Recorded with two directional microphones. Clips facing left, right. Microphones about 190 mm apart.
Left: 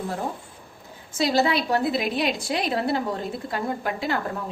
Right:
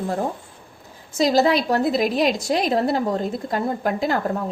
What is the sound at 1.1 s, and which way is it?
A woman's voice, 40° right (ahead or behind).